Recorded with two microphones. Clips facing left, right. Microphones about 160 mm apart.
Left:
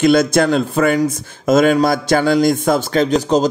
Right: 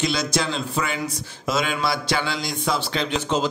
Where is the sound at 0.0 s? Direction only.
50° left (ahead or behind).